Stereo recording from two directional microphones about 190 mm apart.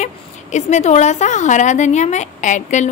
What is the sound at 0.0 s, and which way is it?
A woman's voice, 35° left (ahead or behind).